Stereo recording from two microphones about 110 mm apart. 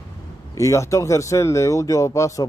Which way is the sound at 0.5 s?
30° left (ahead or behind).